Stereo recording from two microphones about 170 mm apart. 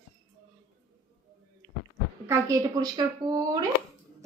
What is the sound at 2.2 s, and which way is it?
A woman's voice, 15° right (ahead or behind).